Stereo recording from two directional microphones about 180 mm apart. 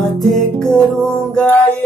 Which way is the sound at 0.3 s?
Centre (ahead or behind).